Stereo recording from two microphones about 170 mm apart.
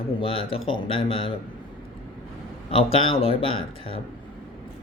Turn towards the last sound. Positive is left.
turn(degrees=35)  # may be behind; listen again after turning